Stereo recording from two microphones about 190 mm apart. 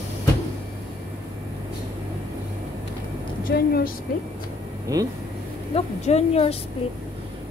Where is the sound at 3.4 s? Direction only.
50° left (ahead or behind).